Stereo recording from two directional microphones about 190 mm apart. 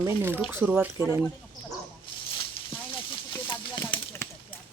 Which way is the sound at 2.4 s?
25° left (ahead or behind).